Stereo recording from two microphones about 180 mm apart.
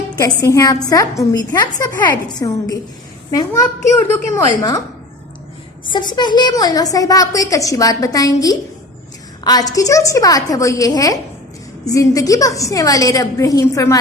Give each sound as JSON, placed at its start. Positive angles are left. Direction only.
{"t": 0.2, "sound": "a woman's voice", "side_deg": 15}
{"t": 4.4, "sound": "a woman's voice", "side_deg": 20}
{"t": 5.9, "sound": "a woman's voice", "side_deg": 25}